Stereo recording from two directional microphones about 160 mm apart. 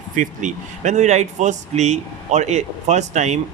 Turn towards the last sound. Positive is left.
turn(degrees=-45)  # may be behind; listen again after turning